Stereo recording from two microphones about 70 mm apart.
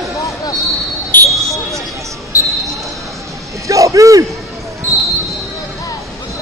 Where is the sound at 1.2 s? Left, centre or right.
Right.